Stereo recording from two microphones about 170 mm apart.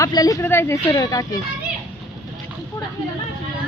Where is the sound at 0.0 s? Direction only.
20° left (ahead or behind).